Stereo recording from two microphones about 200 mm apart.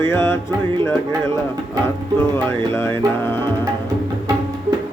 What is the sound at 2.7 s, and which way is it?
Music, 10° left (ahead or behind).